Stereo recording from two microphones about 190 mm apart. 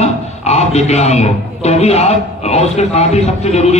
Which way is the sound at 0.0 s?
35° left (ahead or behind).